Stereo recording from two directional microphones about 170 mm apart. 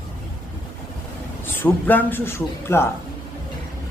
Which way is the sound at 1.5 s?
10° left (ahead or behind).